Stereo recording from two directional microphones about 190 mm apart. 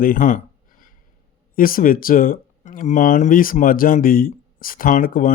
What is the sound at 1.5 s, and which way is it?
Speech, 50° left (ahead or behind).